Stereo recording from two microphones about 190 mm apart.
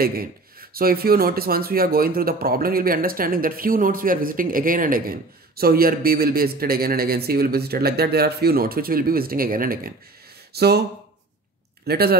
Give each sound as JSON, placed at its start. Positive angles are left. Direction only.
{"t": 0.0, "sound": "speech", "side_deg": -50}
{"t": 11.8, "sound": "speech", "side_deg": -55}